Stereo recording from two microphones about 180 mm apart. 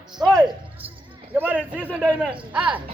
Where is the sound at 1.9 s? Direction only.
5° right (ahead or behind).